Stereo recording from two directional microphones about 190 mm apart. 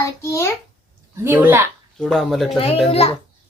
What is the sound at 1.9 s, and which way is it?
Speech, centre (ahead or behind).